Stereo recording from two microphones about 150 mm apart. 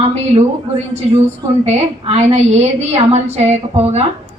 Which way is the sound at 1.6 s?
45° right (ahead or behind).